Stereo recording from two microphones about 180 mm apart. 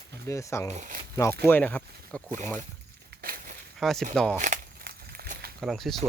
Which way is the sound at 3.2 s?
55° right (ahead or behind).